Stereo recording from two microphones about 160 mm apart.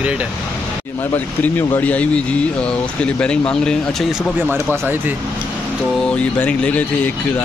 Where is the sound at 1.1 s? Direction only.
10° left (ahead or behind).